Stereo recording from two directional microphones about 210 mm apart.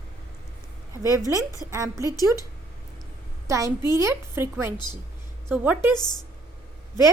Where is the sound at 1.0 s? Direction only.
15° left (ahead or behind).